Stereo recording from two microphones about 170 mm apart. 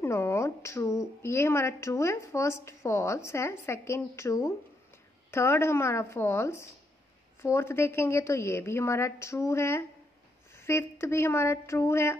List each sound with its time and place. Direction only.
0.0 s a woman's voice: 15° left (ahead or behind)